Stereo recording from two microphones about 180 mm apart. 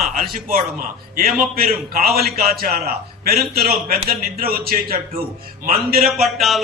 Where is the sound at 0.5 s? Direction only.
55° right (ahead or behind).